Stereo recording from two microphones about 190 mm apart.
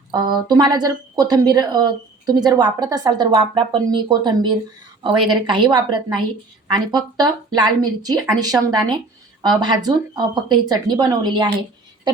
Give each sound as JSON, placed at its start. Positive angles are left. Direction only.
{"t": 0.1, "sound": "a woman's voice", "side_deg": -20}